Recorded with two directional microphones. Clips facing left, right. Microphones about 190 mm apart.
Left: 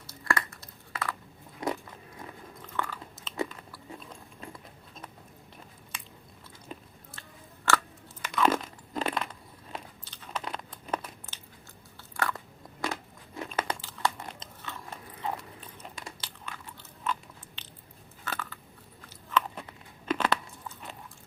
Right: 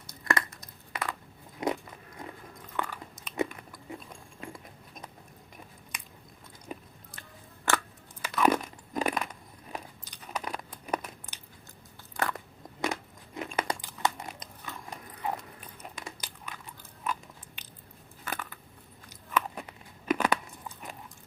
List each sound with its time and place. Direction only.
0.3 s a sound: 20° right (ahead or behind)
1.6 s biting: 20° right (ahead or behind)
2.7 s chewing: 15° right (ahead or behind)
4.4 s a sound: 15° right (ahead or behind)
6.7 s biting: 10° right (ahead or behind)
7.2 s scissors: 15° right (ahead or behind)
8.2 s crunch: 10° right (ahead or behind)
12.1 s biting: 20° right (ahead or behind)
12.8 s crumpling: 20° right (ahead or behind)
14.6 s biting: 15° right (ahead or behind)
19.0 s chewing: 15° right (ahead or behind)